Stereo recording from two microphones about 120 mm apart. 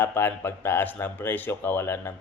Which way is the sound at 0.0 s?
15° left (ahead or behind).